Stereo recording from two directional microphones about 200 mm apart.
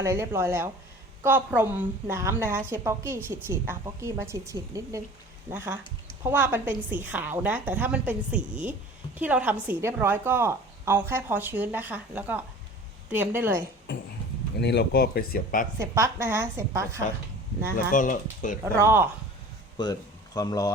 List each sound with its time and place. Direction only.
0.0 s a woman's voice: 15° right (ahead or behind)
14.6 s speech: 55° left (ahead or behind)
15.8 s a woman's voice: 15° right (ahead or behind)
17.9 s speech: 40° left (ahead or behind)
18.6 s a woman's voice: 10° right (ahead or behind)
19.8 s speech: 20° left (ahead or behind)